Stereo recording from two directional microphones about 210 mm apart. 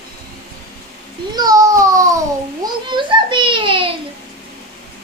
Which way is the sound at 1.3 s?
20° right (ahead or behind).